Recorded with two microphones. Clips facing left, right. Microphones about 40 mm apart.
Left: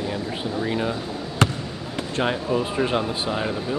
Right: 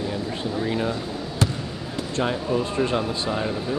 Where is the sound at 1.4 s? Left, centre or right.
Left.